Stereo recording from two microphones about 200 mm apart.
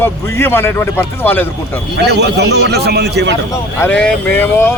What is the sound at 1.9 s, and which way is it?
Speech, 55° right (ahead or behind).